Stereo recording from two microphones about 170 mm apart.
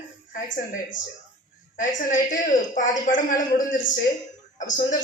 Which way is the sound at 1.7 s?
60° left (ahead or behind).